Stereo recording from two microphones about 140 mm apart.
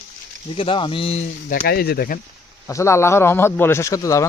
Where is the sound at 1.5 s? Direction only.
90° left.